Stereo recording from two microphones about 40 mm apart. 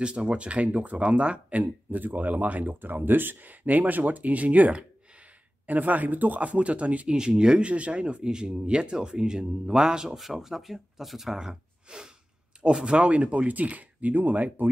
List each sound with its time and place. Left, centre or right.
0.0 s speech: right
1.6 s speech: right
6.4 s speech: right
7.2 s speech: right
10.0 s speech: centre
11.3 s speech: centre; by 14.7 s right